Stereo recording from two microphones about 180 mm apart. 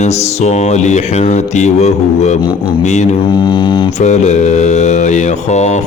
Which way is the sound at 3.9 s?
40° left (ahead or behind).